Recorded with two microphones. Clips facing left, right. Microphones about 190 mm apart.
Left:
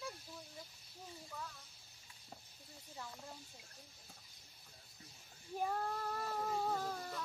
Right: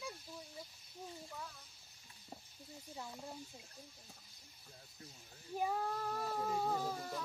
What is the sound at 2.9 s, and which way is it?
Speech, 15° right (ahead or behind).